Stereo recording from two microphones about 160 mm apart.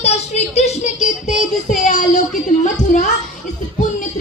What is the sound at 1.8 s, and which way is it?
Child singing, 50° left (ahead or behind).